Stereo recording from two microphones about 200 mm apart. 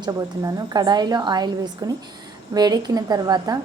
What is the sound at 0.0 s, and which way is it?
A woman's voice, 20° right (ahead or behind).